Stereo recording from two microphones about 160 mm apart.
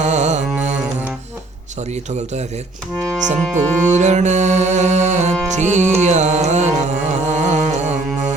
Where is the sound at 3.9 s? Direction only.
50° right (ahead or behind).